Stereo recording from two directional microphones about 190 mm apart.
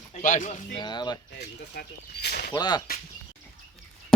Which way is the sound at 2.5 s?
20° left (ahead or behind).